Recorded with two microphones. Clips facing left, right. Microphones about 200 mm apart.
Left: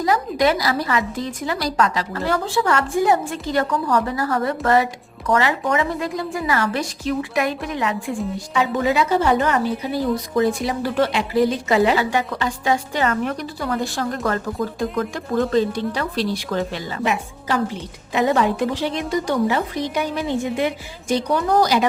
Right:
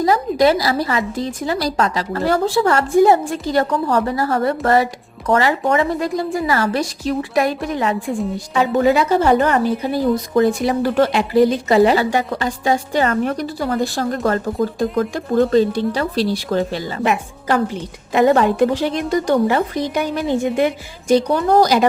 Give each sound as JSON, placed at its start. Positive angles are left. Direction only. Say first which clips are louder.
{"t": 0.0, "sound": "a woman's voice", "louder": "right 4 dB", "side_deg": -30}
{"t": 17.0, "sound": "a woman's voice", "louder": "right 3 dB", "side_deg": -55}